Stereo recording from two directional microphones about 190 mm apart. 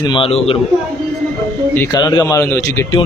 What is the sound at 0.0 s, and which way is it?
Speech, 25° left (ahead or behind).